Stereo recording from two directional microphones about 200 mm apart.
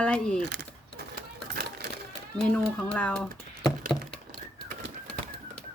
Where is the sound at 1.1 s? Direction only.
50° right (ahead or behind).